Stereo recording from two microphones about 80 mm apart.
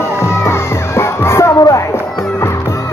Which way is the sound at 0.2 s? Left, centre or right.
Left.